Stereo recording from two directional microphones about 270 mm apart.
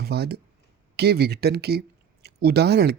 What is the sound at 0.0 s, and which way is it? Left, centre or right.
Speech, right.